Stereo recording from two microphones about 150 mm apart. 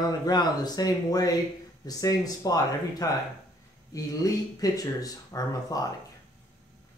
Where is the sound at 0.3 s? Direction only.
25° left (ahead or behind).